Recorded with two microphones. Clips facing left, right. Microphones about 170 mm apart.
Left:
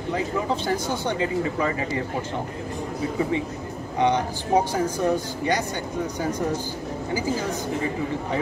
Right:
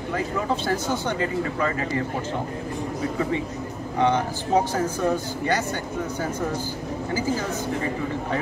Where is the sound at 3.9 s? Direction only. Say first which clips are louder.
Even; 15° left (ahead or behind).